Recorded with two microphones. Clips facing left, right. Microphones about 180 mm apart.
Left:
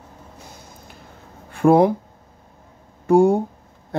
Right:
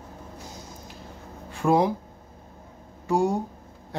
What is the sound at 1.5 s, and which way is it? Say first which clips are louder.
Speech: left 7 dB; 55° left (ahead or behind).